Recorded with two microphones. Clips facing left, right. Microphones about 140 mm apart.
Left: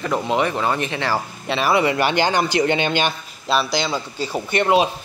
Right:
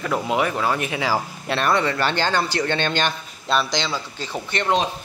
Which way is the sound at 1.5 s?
5° left (ahead or behind).